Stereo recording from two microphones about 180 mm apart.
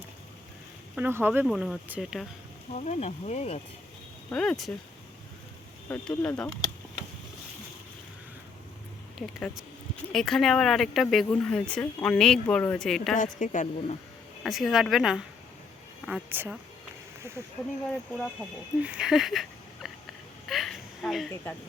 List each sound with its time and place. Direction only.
0.9 s speech: 10° right (ahead or behind)
2.7 s speech: 40° left (ahead or behind)
4.3 s speech: 5° left (ahead or behind)
5.9 s speech: 5° left (ahead or behind)
10.1 s speech: 5° left (ahead or behind)
13.1 s a woman's voice: 45° left (ahead or behind)
14.4 s speech: centre (ahead or behind)
18.2 s speech: 5° right (ahead or behind)
20.5 s a sound: centre (ahead or behind)